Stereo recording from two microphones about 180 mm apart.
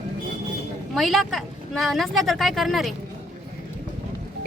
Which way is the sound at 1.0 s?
Centre (ahead or behind).